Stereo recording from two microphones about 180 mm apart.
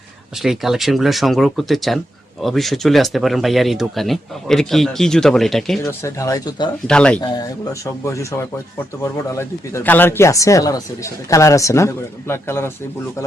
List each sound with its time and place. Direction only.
0.4 s speech: centre (ahead or behind)
6.0 s speech: 20° left (ahead or behind)
6.8 s speech: 5° left (ahead or behind)
7.2 s speech: 20° left (ahead or behind)